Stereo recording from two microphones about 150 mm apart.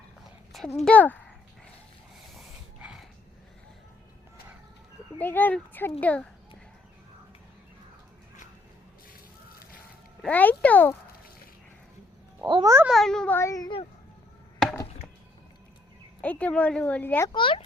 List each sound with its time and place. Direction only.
0.5 s a sound: centre (ahead or behind)
0.9 s speech: 10° left (ahead or behind)
2.8 s a sound: 5° right (ahead or behind)
5.2 s a woman's voice: 10° left (ahead or behind)
10.2 s a woman's voice: 10° left (ahead or behind)
12.5 s a child's voice: 30° right (ahead or behind)
12.9 s a woman's voice: centre (ahead or behind); by 13.7 s 20° left (ahead or behind)
16.2 s a woman's voice: 10° left (ahead or behind)
17.2 s speech: 35° left (ahead or behind)